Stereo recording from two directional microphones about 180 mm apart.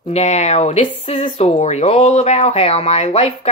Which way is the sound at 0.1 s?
40° left (ahead or behind).